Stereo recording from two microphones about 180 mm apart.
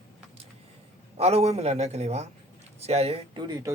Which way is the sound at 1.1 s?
35° right (ahead or behind).